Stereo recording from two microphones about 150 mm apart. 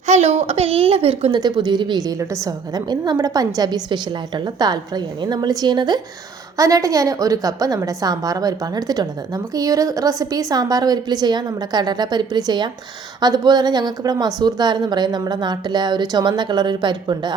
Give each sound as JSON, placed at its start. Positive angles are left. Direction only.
{"t": 0.1, "sound": "a woman's voice", "side_deg": -45}
{"t": 1.3, "sound": "a woman's voice", "side_deg": -30}